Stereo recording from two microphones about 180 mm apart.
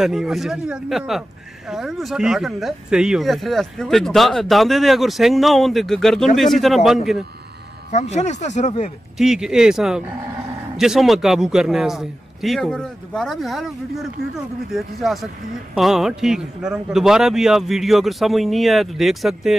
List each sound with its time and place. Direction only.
0.0 s speech: centre (ahead or behind)
7.9 s speech: 40° left (ahead or behind)
9.2 s speech: 5° right (ahead or behind)